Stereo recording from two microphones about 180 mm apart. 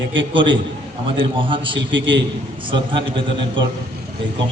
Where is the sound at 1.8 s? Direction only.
90° right.